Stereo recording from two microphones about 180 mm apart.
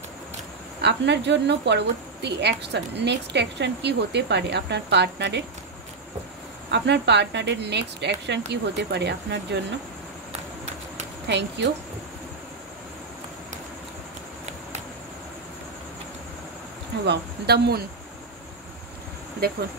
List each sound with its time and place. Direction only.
0.7 s a woman's voice: 75° right (ahead or behind)
6.7 s a woman's voice: 70° right (ahead or behind)
11.2 s a woman's voice: 75° right (ahead or behind)
17.0 s speech: 65° right (ahead or behind)